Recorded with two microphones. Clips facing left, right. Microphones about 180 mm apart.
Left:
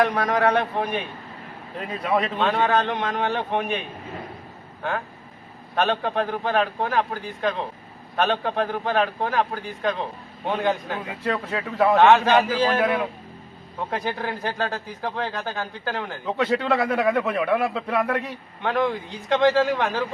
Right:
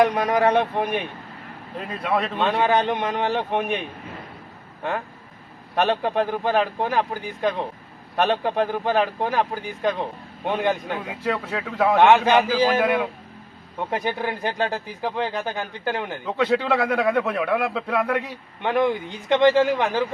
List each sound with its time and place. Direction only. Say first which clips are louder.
0.0 s a man's voice: right 2 dB; 15° right (ahead or behind)
1.9 s a man's voice: left 1 dB; centre (ahead or behind)
2.6 s a man's voice: right 2 dB; 15° right (ahead or behind)
5.7 s a man's voice: right 2 dB; 15° right (ahead or behind)
11.1 s a man's voice: even; centre (ahead or behind)
11.9 s a man's voice: right 1 dB; 15° right (ahead or behind)
12.8 s a man's voice: right 1 dB; 5° right (ahead or behind)
16.2 s a man's voice: right 1 dB; centre (ahead or behind)
18.6 s a man's voice: right 2 dB; 15° right (ahead or behind)